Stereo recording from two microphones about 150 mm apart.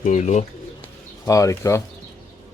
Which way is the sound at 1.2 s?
20° left (ahead or behind).